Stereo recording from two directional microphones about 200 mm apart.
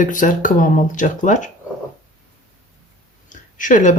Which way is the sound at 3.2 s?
40° left (ahead or behind).